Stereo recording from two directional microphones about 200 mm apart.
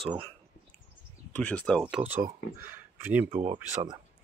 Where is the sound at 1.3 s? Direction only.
5° left (ahead or behind).